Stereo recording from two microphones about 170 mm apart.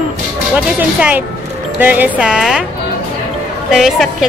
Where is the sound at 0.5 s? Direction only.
10° right (ahead or behind).